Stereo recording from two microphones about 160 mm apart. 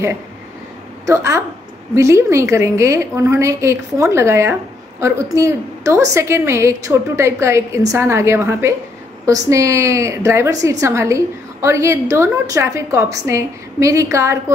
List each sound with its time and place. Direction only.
1.0 s a woman's voice: 20° right (ahead or behind)